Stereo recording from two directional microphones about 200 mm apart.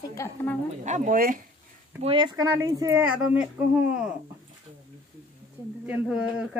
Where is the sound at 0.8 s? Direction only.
40° right (ahead or behind).